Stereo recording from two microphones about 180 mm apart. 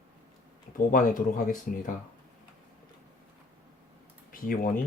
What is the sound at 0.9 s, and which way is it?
Speech, 50° left (ahead or behind).